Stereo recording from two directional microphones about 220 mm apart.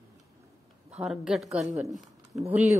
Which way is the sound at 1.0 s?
Centre (ahead or behind).